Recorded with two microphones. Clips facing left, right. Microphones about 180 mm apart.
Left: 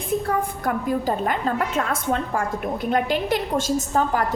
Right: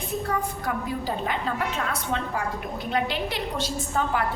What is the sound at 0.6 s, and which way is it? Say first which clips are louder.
A woman's voice: left 6 dB; 50° left (ahead or behind).